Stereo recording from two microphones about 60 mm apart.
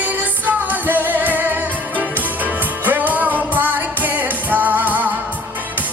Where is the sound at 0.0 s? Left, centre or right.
Right.